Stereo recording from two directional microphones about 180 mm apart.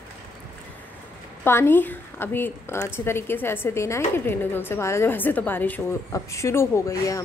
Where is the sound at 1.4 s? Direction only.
15° left (ahead or behind).